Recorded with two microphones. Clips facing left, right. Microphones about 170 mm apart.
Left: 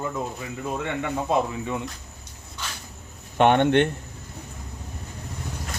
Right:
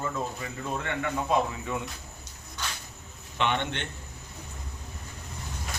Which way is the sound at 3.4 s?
55° left (ahead or behind).